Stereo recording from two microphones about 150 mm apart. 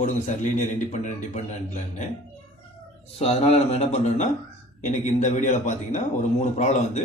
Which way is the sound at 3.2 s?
45° left (ahead or behind).